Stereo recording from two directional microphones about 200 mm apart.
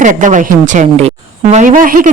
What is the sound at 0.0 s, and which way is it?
A woman's voice, 40° right (ahead or behind).